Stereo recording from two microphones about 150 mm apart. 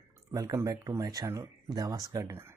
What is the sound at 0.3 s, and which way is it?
Speech, 20° right (ahead or behind).